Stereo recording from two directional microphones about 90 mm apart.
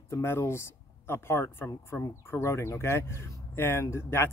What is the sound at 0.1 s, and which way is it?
Speech, 30° left (ahead or behind).